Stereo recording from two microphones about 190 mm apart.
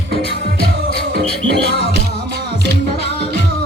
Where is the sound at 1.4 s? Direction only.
65° right (ahead or behind).